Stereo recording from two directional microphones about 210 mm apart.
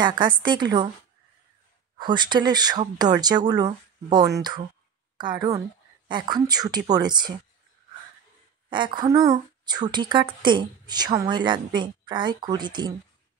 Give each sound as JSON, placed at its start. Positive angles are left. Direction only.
{"t": 0.0, "sound": "speech", "side_deg": -20}
{"t": 2.0, "sound": "a woman's voice", "side_deg": -20}
{"t": 8.6, "sound": "speech", "side_deg": -20}